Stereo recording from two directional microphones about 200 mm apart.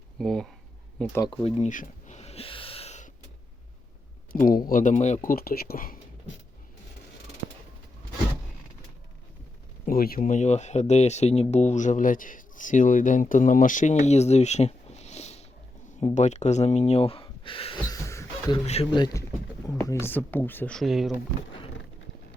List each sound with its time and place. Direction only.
0.2 s speech: centre (ahead or behind)
1.3 s a sound: 30° left (ahead or behind)
4.3 s speech: 45° left (ahead or behind)
9.8 s speech: 45° left (ahead or behind); by 18.6 s 15° left (ahead or behind)
18.6 s speech: 30° left (ahead or behind); by 21.2 s centre (ahead or behind)